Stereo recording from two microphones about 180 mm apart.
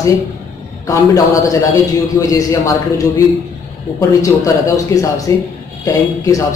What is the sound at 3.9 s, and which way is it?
A man's voice, 20° left (ahead or behind).